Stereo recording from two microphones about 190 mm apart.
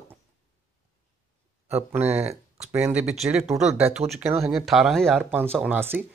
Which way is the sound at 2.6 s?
10° right (ahead or behind).